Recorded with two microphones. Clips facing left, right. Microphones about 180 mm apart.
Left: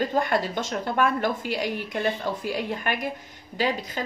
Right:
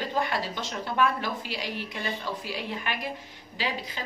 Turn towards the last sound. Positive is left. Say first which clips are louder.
# left 6 dB
turn(degrees=45)  # may be behind; listen again after turning